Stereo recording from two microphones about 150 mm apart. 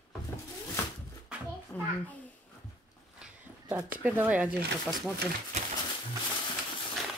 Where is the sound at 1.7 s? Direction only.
10° left (ahead or behind).